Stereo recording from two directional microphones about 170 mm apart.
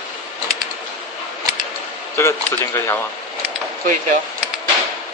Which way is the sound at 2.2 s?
15° left (ahead or behind).